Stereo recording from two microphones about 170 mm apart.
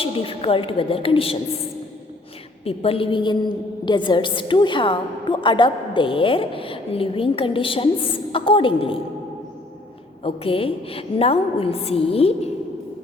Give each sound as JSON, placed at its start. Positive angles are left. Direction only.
{"t": 0.0, "sound": "a woman's voice", "side_deg": 35}
{"t": 2.6, "sound": "a woman's voice", "side_deg": 35}
{"t": 10.2, "sound": "a woman's voice", "side_deg": 35}